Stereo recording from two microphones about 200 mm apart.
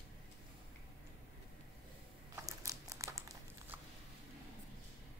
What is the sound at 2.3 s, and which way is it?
Crumpling, 15° right (ahead or behind).